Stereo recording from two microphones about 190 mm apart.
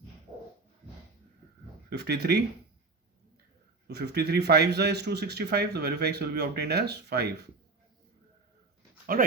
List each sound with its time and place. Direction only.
1.9 s speech: 60° right (ahead or behind)
3.8 s speech: 60° right (ahead or behind)
9.1 s speech: 50° right (ahead or behind)